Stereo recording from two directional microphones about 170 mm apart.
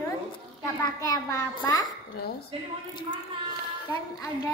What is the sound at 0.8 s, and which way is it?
A child's voice, 20° left (ahead or behind).